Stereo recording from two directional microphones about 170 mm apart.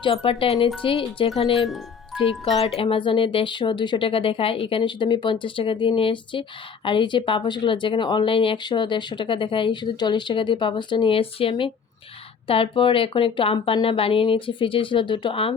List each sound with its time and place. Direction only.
0.0 s speech: 30° left (ahead or behind)
1.6 s speech: centre (ahead or behind)
2.4 s speech: 35° left (ahead or behind)